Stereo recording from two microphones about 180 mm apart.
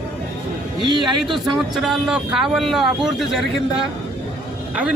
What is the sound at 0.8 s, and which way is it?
Speech, 25° right (ahead or behind).